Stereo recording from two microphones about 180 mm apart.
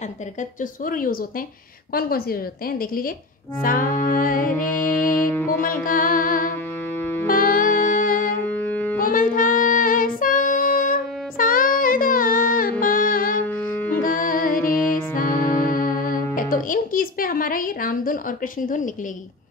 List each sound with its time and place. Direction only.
0.8 s a woman's voice: 50° left (ahead or behind)
3.6 s speech: 50° left (ahead or behind)
4.5 s music: 15° left (ahead or behind)
5.6 s music: 50° left (ahead or behind)
8.5 s music: 10° left (ahead or behind)
9.0 s child singing: 50° left (ahead or behind)
12.8 s music: 50° left (ahead or behind)
13.7 s music: 10° left (ahead or behind)
14.0 s music: 50° left (ahead or behind)
14.8 s music: 15° left (ahead or behind)
16.3 s speech: 50° left (ahead or behind)